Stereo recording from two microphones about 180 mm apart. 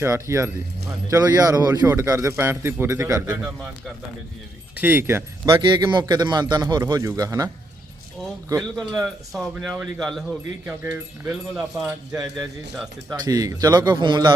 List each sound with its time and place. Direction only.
0.0 s a man's voice: 15° right (ahead or behind)
4.7 s a man's voice: 10° right (ahead or behind)
5.5 s a man's voice: 25° right (ahead or behind)
8.7 s speech: centre (ahead or behind); by 11.8 s 15° right (ahead or behind)
12.7 s speech: centre (ahead or behind)
13.1 s a man's voice: 20° right (ahead or behind)